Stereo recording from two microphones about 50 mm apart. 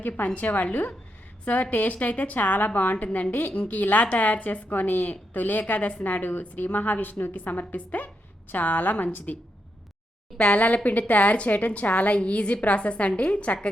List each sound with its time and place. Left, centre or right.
0.3 s a woman's voice: left